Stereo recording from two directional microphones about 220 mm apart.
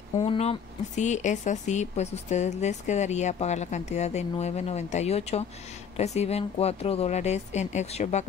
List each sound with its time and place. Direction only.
0.2 s speech: 25° left (ahead or behind)